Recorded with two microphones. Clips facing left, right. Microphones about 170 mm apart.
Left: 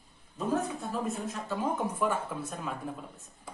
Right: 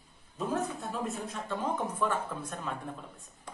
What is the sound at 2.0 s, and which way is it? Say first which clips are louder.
Speech: left 1 dB; 10° left (ahead or behind).